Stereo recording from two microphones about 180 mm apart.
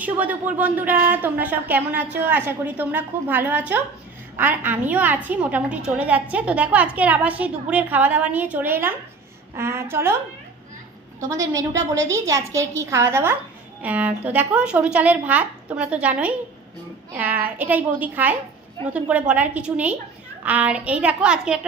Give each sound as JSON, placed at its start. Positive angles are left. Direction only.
{"t": 0.0, "sound": "a woman's voice", "side_deg": -10}